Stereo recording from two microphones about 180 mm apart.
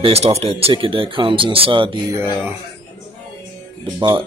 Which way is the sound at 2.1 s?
10° right (ahead or behind).